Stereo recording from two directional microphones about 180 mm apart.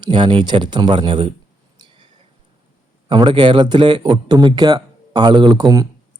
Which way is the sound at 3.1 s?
25° right (ahead or behind).